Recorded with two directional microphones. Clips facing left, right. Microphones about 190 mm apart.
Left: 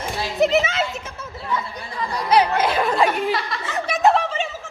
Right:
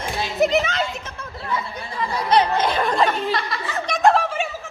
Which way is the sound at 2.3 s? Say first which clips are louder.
Left 1 dB; 10° left (ahead or behind).